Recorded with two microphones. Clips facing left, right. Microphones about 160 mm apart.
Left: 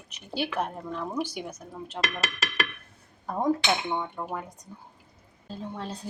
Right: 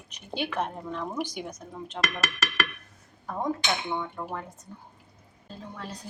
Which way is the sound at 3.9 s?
15° left (ahead or behind).